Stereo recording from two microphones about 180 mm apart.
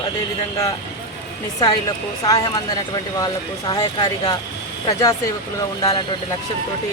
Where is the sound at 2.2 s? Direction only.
20° left (ahead or behind).